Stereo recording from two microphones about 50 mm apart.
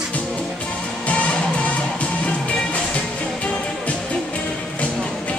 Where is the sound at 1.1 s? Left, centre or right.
Left.